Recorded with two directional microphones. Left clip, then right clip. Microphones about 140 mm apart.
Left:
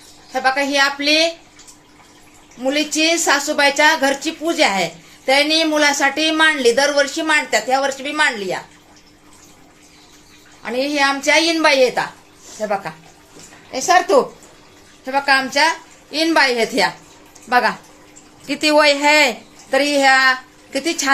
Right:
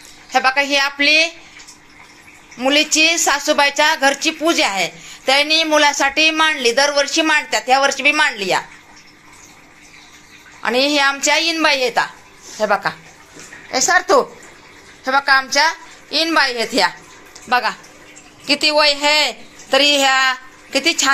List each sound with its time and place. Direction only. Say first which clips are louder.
0.3 s a woman's voice: right 3 dB; 5° right (ahead or behind)
2.6 s a woman's voice: right 4 dB; 5° right (ahead or behind)
10.6 s a woman's voice: right 3 dB; 5° right (ahead or behind)
15.0 s a woman's voice: right 2 dB; 10° left (ahead or behind)